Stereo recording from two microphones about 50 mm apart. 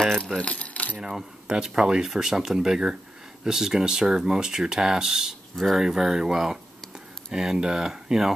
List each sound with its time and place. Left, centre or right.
0.4 s keys jangling: left
0.9 s speech: centre
5.9 s speech: centre